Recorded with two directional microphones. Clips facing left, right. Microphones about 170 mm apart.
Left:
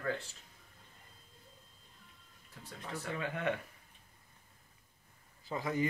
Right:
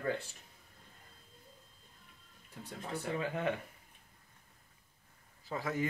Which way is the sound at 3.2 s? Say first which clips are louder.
Left 1 dB; 30° right (ahead or behind).